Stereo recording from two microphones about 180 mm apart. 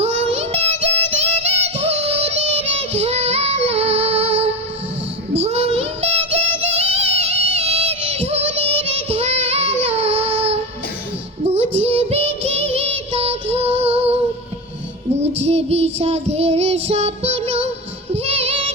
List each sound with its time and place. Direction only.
0.0 s music: 35° right (ahead or behind)
11.5 s child singing: 35° right (ahead or behind)
15.3 s child singing: 35° right (ahead or behind)